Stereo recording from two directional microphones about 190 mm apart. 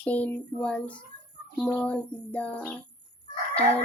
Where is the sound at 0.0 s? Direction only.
10° left (ahead or behind).